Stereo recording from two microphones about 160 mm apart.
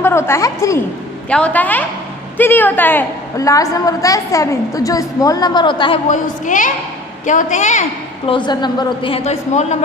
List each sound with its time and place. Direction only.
0.0 s a woman's voice: 15° left (ahead or behind)
6.0 s a woman's voice: 55° left (ahead or behind)
8.3 s a woman's voice: 30° left (ahead or behind); by 9.8 s 45° left (ahead or behind)